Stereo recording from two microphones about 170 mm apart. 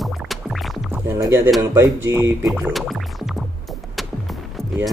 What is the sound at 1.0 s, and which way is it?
Speech, 15° right (ahead or behind).